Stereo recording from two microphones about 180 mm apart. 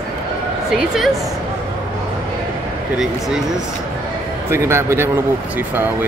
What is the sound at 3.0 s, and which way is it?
Speech, centre (ahead or behind).